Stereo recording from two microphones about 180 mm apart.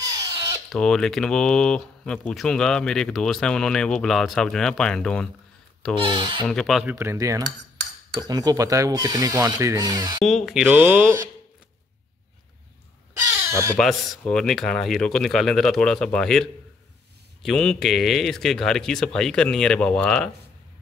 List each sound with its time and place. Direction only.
0.7 s speech: 5° left (ahead or behind)
6.4 s cutlery: 5° left (ahead or behind); by 7.4 s 15° right (ahead or behind)
7.4 s cutlery: 70° right (ahead or behind)
8.2 s speech: 20° right (ahead or behind)
10.2 s speech: centre (ahead or behind)
10.6 s cutlery: 10° right (ahead or behind)
13.5 s speech: 15° right (ahead or behind)
13.7 s speech: centre (ahead or behind)